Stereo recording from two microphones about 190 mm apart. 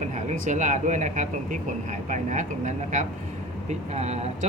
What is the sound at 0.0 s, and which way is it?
Speech, 40° right (ahead or behind).